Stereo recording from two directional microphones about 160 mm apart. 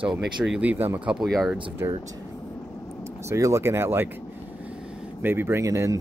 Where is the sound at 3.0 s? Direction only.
15° right (ahead or behind).